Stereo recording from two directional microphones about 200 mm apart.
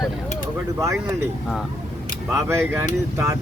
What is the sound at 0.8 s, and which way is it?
Speech, 15° right (ahead or behind).